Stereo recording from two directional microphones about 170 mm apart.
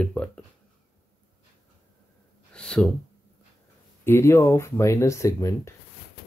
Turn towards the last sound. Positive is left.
turn(degrees=20)  # may be behind; listen again after turning